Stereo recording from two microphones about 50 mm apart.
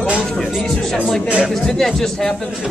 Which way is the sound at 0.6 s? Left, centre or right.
Centre.